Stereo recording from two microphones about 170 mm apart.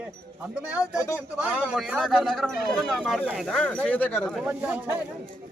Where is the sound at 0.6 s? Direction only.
5° right (ahead or behind); by 4.3 s 10° left (ahead or behind).